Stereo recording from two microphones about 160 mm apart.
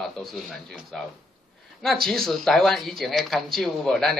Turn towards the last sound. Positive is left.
turn(degrees=0)  # may be behind; listen again after turning